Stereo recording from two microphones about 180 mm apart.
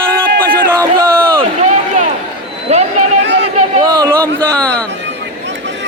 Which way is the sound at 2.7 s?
40° right (ahead or behind).